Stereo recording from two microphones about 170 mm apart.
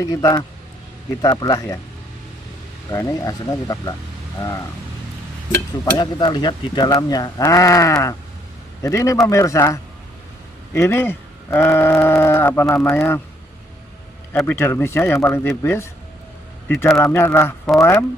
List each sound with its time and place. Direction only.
0.0 s speech: 20° left (ahead or behind)
2.9 s speech: 20° left (ahead or behind)
5.9 s speech: 25° left (ahead or behind)
14.3 s speech: 10° left (ahead or behind)